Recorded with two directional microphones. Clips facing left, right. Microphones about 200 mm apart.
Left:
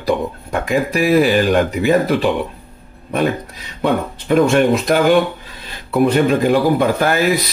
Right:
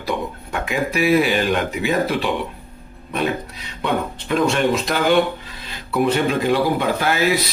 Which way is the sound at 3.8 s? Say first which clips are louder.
Left 4 dB; 50° left (ahead or behind).